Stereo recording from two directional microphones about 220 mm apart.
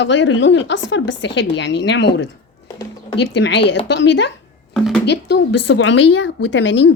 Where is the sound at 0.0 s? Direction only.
55° left (ahead or behind).